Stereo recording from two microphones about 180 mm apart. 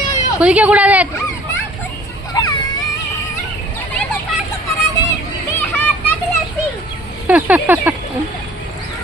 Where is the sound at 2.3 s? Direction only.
20° left (ahead or behind).